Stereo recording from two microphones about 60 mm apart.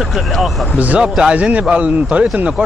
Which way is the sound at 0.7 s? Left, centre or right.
Right.